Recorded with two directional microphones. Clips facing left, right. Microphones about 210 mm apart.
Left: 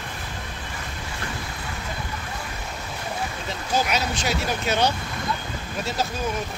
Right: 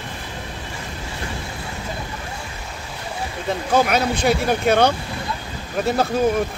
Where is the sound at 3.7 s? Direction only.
55° right (ahead or behind).